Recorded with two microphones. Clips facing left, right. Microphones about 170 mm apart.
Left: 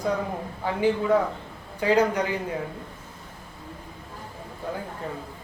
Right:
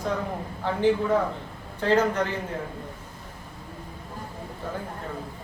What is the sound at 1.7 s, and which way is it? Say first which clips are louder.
Speech: left 1 dB; 10° left (ahead or behind).